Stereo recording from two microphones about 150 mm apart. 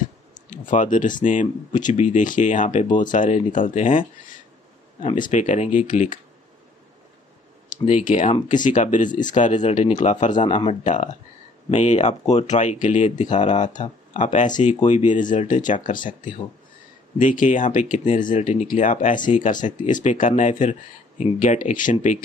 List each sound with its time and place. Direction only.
0.5 s speech: 60° left (ahead or behind)
5.3 s speech: 55° left (ahead or behind)
7.7 s speech: 55° left (ahead or behind)